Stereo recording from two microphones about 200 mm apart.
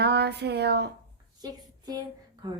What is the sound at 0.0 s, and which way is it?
Speech, 55° right (ahead or behind).